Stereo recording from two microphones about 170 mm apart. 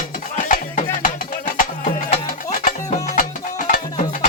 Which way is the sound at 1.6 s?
50° left (ahead or behind).